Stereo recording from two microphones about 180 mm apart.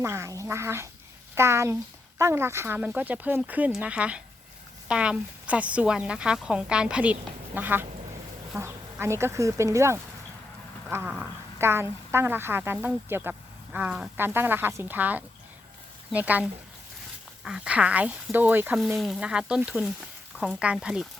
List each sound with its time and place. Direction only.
0.0 s a woman's voice: 15° right (ahead or behind)